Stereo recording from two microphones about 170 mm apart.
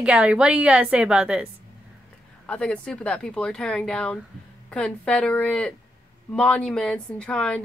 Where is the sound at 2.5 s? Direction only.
5° left (ahead or behind).